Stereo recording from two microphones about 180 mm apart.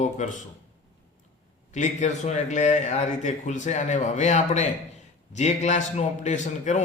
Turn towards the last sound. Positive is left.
turn(degrees=40)  # may be behind; listen again after turning